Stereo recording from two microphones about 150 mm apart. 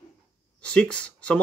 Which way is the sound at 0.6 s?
5° left (ahead or behind).